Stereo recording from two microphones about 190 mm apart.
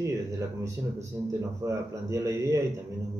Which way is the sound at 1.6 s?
15° right (ahead or behind).